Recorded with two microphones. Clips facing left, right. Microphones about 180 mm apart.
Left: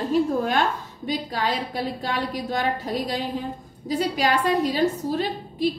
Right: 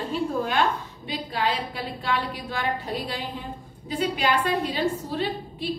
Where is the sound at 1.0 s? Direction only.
40° left (ahead or behind).